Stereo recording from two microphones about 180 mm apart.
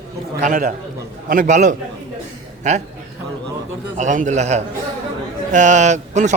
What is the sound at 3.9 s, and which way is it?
A man's voice, 45° right (ahead or behind).